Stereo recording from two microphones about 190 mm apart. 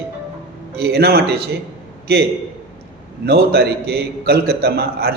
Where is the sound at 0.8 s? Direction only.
55° right (ahead or behind).